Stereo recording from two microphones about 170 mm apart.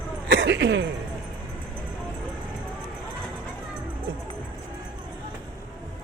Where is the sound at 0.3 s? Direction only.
90° right.